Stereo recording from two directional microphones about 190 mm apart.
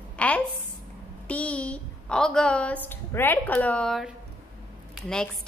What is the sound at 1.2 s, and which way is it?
A woman's voice, 5° left (ahead or behind).